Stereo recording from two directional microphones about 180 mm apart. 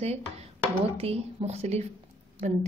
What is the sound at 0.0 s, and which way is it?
A woman's voice, 35° right (ahead or behind).